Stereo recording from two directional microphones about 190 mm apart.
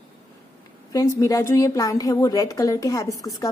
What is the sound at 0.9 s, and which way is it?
A woman's voice, 15° left (ahead or behind).